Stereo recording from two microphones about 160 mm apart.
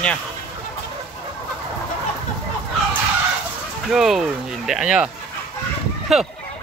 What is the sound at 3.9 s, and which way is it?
Speech, centre (ahead or behind).